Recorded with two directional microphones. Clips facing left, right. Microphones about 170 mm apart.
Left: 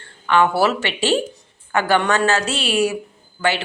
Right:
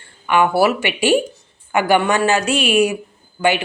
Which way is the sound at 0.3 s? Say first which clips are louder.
Right 2 dB; 10° right (ahead or behind).